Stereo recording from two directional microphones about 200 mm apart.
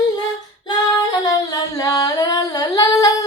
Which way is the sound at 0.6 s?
20° left (ahead or behind).